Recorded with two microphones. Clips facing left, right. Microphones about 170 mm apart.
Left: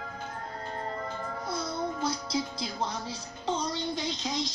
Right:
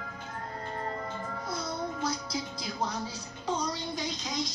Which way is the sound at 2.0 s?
25° left (ahead or behind).